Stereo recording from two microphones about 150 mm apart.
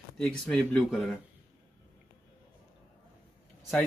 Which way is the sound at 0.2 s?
5° left (ahead or behind).